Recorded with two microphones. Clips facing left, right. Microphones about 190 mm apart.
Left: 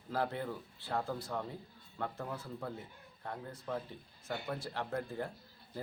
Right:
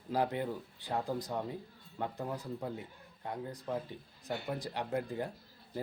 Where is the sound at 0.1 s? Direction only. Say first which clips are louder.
Right 3 dB; 15° right (ahead or behind).